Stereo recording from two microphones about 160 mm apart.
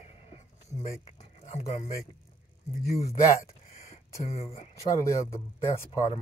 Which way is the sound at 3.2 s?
20° left (ahead or behind).